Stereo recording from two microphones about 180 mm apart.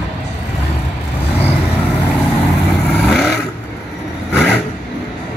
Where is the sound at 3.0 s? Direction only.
5° left (ahead or behind).